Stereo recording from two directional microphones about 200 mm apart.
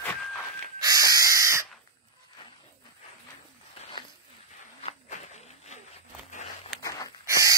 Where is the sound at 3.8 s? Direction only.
25° left (ahead or behind).